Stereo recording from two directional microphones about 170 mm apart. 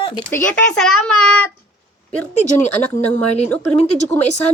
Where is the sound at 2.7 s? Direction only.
10° left (ahead or behind).